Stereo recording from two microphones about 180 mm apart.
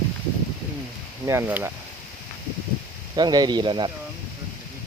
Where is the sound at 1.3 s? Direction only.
10° right (ahead or behind).